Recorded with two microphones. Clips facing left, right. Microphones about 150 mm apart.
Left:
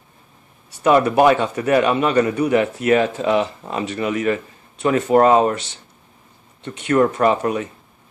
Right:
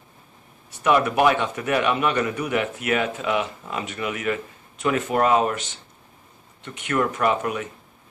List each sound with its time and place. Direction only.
0.8 s a man's voice: 30° left (ahead or behind)